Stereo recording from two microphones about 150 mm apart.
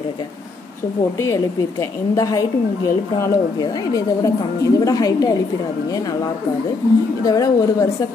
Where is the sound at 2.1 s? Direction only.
25° left (ahead or behind).